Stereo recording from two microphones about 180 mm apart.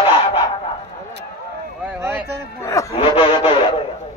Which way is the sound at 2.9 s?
30° left (ahead or behind).